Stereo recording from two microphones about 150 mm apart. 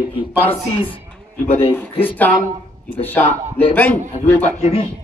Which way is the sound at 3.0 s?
15° left (ahead or behind).